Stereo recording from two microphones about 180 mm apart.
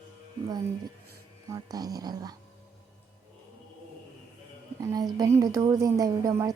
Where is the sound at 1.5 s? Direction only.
20° right (ahead or behind).